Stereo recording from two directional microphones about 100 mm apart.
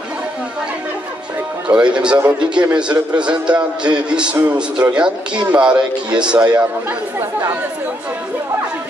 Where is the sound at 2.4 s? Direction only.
10° right (ahead or behind).